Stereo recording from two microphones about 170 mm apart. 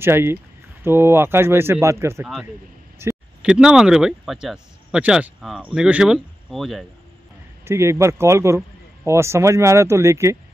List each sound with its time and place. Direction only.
0.0 s speech: 15° right (ahead or behind)
3.0 s a sound: 15° right (ahead or behind)
3.4 s speech: 5° right (ahead or behind)
7.6 s speech: 15° right (ahead or behind)